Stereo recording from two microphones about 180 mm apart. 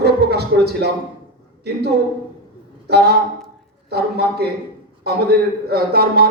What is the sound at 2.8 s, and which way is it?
A man's voice, 65° right (ahead or behind).